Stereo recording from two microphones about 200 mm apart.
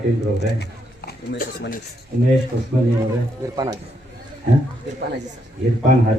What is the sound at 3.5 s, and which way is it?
Mantra, 20° right (ahead or behind).